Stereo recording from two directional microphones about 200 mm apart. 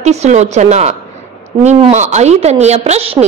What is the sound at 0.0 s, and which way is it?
A woman's voice, 35° right (ahead or behind).